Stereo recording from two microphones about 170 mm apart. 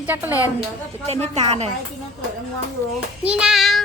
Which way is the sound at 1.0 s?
40° right (ahead or behind).